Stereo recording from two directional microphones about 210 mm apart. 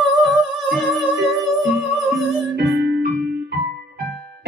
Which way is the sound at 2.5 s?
50° right (ahead or behind).